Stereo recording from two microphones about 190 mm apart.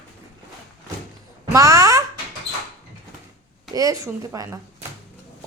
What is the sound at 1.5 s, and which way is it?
Speech, 15° right (ahead or behind).